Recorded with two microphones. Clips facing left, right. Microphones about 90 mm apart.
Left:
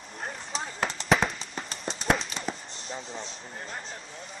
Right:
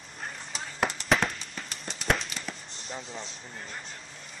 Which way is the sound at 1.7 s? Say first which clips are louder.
Left 5 dB; 35° left (ahead or behind).